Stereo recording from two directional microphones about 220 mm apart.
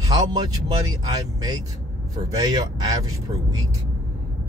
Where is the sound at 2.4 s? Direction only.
15° right (ahead or behind).